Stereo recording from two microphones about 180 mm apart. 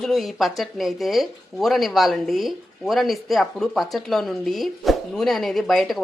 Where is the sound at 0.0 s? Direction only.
Centre (ahead or behind).